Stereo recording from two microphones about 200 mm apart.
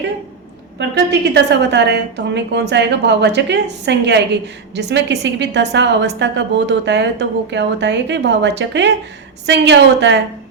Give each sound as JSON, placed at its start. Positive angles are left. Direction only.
{"t": 0.8, "sound": "a woman's voice", "side_deg": -60}